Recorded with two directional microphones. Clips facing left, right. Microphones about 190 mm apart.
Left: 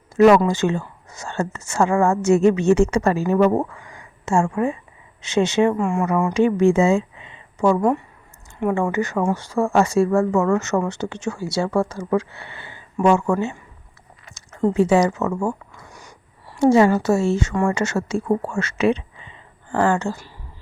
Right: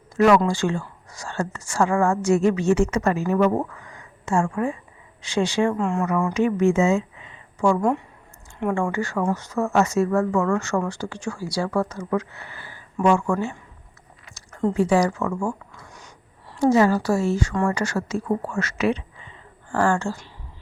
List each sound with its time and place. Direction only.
0.2 s speech: 20° left (ahead or behind)
5.7 s speech: 10° left (ahead or behind)
6.1 s speech: 25° left (ahead or behind)
7.8 s a woman's voice: 5° left (ahead or behind)
8.7 s speech: 20° left (ahead or behind)
14.7 s speech: 25° left (ahead or behind)
15.9 s a sound: 10° left (ahead or behind)
16.6 s speech: 25° left (ahead or behind)
17.5 s speech: 10° left (ahead or behind)
17.7 s speech: 25° left (ahead or behind)